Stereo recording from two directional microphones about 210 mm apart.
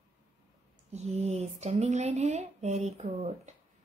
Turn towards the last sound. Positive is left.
turn(degrees=-30)  # may be behind; listen again after turning